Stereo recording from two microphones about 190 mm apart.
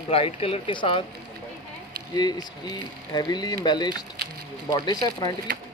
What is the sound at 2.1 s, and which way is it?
Speech, 20° left (ahead or behind).